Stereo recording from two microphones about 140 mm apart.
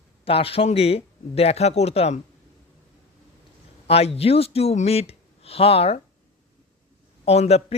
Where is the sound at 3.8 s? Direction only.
45° left (ahead or behind).